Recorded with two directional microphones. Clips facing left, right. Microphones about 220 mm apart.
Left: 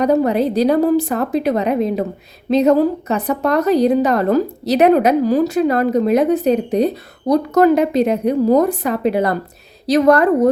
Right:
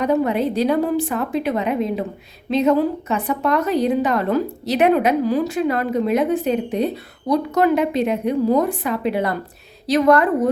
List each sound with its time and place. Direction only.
0.0 s a woman's voice: 40° left (ahead or behind)